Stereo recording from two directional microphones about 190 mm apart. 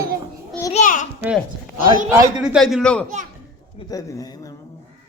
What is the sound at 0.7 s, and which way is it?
Speech, 40° left (ahead or behind).